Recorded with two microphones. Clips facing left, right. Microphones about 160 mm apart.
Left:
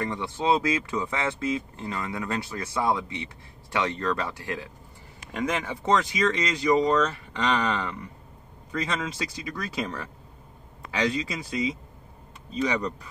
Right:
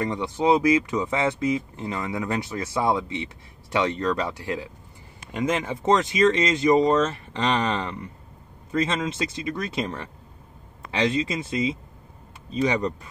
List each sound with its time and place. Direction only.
0.0 s speech: 20° right (ahead or behind)